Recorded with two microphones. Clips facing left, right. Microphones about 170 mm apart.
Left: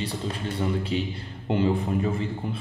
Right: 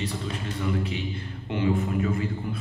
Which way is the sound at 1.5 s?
35° left (ahead or behind).